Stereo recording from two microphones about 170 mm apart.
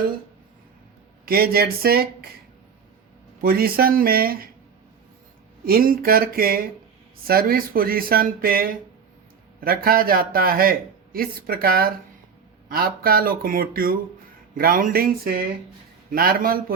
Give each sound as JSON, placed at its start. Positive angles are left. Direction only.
{"t": 1.2, "sound": "a man's voice", "side_deg": -60}
{"t": 3.4, "sound": "a man's voice", "side_deg": -60}
{"t": 5.6, "sound": "a man's voice", "side_deg": -60}